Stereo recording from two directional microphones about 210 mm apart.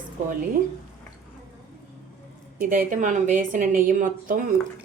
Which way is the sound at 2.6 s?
40° right (ahead or behind).